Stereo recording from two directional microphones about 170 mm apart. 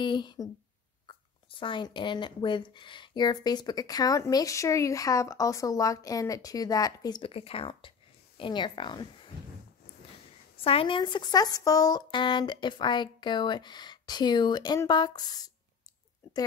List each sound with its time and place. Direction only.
0.0 s speech: 25° left (ahead or behind)
1.6 s speech: 30° left (ahead or behind)
10.6 s speech: 35° left (ahead or behind)